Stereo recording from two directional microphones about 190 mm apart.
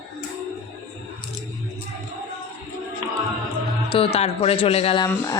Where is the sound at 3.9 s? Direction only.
30° left (ahead or behind).